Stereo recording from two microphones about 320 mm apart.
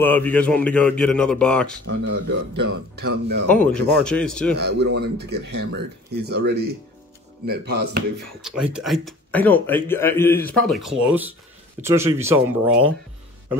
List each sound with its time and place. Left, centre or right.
0.0 s speech: centre
2.2 s speech: right
3.4 s speech: centre
4.6 s speech: right
8.4 s speech: centre